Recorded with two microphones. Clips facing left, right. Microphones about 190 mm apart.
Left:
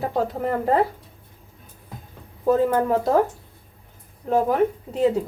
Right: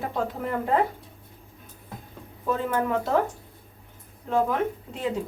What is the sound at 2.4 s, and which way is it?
Speech, 40° left (ahead or behind).